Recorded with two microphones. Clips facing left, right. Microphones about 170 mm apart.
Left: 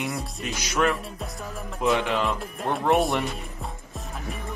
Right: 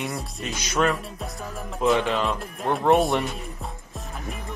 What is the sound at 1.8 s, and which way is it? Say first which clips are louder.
Speech: right 2 dB; 15° left (ahead or behind).